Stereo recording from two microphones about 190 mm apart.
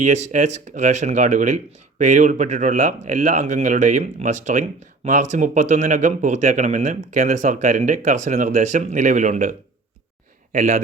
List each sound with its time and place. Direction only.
0.0 s speech: 40° right (ahead or behind)